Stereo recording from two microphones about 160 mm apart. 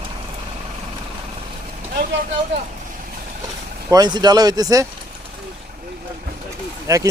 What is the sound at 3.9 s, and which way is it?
Speech, 25° right (ahead or behind).